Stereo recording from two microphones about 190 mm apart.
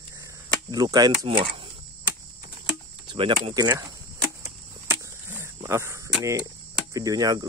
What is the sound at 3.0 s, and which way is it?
Speech, 25° right (ahead or behind).